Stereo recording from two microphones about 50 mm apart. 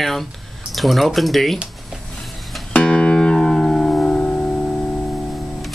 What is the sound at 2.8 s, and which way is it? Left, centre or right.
Music, left.